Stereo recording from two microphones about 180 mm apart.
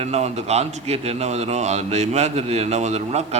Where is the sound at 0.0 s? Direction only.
35° right (ahead or behind).